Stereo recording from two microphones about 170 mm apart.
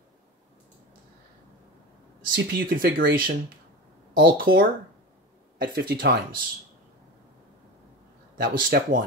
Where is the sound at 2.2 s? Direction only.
55° right (ahead or behind).